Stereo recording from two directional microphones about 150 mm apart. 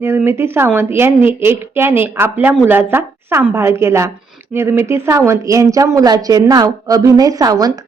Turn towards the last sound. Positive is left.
turn(degrees=-25)  # may be behind; listen again after turning